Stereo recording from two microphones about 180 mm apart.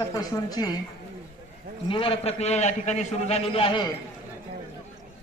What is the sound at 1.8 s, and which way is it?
A man's voice, 30° left (ahead or behind).